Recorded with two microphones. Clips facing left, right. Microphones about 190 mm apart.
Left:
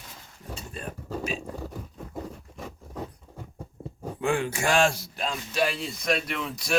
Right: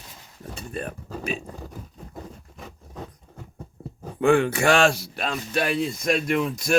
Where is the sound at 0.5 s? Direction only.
60° right (ahead or behind).